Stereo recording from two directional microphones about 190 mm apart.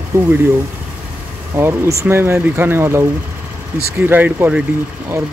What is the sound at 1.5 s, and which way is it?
Speech, 15° right (ahead or behind).